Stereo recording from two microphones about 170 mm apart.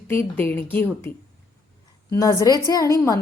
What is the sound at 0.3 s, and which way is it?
A woman's voice, 10° left (ahead or behind).